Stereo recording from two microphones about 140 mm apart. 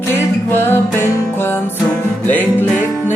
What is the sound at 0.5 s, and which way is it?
Music, 15° left (ahead or behind).